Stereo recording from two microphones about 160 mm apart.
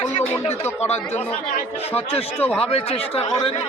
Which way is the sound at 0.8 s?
45° left (ahead or behind).